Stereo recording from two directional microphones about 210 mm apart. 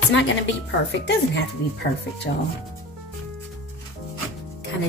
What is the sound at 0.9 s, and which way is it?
Speech, 55° left (ahead or behind).